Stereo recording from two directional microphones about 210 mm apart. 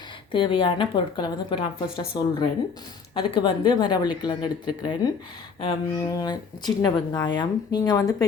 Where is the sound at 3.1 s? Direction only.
25° left (ahead or behind).